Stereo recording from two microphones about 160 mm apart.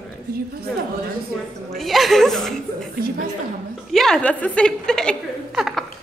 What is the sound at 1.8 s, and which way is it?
Speech, centre (ahead or behind).